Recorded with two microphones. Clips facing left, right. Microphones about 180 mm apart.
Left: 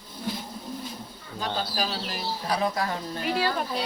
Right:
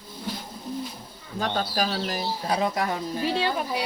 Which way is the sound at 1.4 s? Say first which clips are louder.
Right 3 dB; 45° right (ahead or behind).